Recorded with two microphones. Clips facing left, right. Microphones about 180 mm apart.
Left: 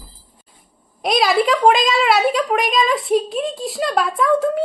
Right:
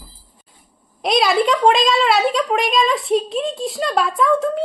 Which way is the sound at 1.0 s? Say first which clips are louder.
Even; centre (ahead or behind).